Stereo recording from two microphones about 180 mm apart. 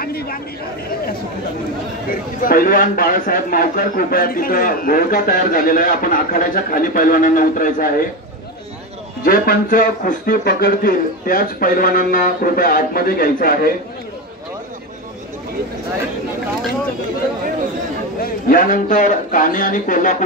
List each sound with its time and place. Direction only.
0.0 s speech: 55° left (ahead or behind)
2.0 s speech: 50° left (ahead or behind)
9.2 s speech: 55° left (ahead or behind)
18.2 s speech: 50° left (ahead or behind)